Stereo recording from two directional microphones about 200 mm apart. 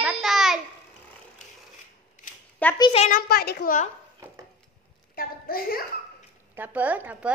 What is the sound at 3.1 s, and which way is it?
Speech, 50° left (ahead or behind).